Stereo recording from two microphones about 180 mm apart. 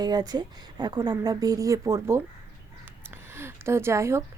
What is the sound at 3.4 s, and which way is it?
Speech, 15° right (ahead or behind).